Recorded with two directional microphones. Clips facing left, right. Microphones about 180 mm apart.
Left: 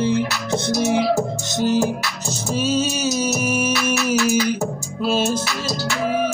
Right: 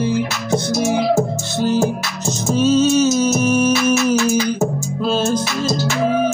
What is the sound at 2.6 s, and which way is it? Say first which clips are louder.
Music: right 8 dB; 10° left (ahead or behind).